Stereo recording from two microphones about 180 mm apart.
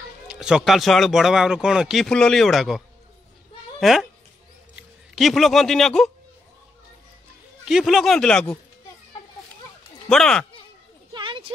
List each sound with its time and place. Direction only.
0.3 s speech: 5° right (ahead or behind)
3.8 s speech: centre (ahead or behind)
7.6 s speech: centre (ahead or behind)
10.0 s speech: 5° left (ahead or behind)
11.1 s a sound: 25° right (ahead or behind)